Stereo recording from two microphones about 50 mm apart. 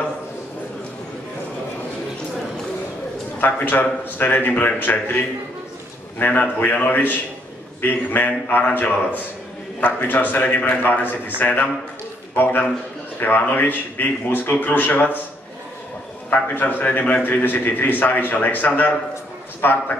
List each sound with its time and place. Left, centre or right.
3.3 s a man's voice: left
6.1 s a man's voice: left
13.2 s a man's voice: left
16.3 s a man's voice: left